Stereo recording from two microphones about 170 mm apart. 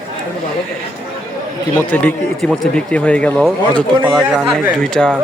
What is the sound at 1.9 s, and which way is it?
A man's voice, 10° left (ahead or behind).